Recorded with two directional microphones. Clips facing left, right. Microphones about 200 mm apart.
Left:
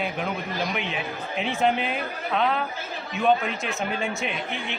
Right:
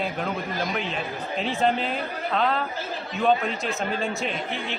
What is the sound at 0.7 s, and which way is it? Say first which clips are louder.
Speech: right 1 dB; 10° left (ahead or behind).